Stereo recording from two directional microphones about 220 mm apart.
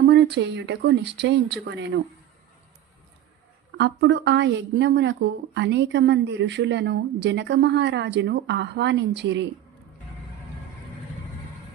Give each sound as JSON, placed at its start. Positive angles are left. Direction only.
{"t": 0.0, "sound": "a woman's voice", "side_deg": -50}
{"t": 3.8, "sound": "a woman's voice", "side_deg": -50}